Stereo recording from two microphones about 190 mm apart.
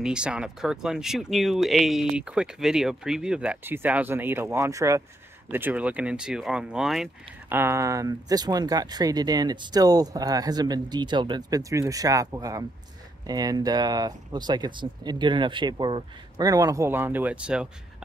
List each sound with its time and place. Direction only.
0.0 s speech: 5° right (ahead or behind)